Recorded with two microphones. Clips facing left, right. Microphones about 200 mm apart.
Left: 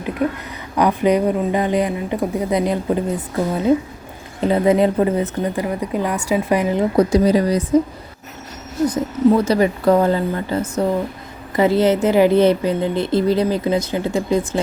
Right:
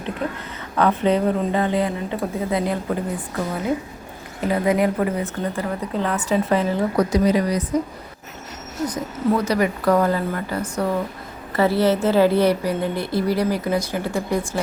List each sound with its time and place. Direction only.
0.2 s a woman's voice: 10° left (ahead or behind); by 7.8 s 30° left (ahead or behind)
8.9 s a woman's voice: 30° left (ahead or behind)